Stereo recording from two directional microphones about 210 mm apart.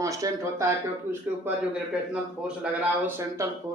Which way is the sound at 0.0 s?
15° right (ahead or behind).